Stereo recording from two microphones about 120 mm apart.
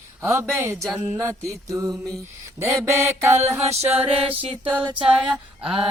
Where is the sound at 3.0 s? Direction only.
20° right (ahead or behind).